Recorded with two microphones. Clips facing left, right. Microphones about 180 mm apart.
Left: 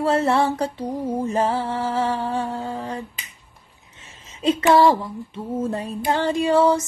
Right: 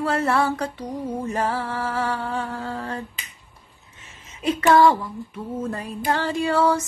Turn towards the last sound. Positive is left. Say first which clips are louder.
# left 3 dB
turn(degrees=20)  # may be behind; listen again after turning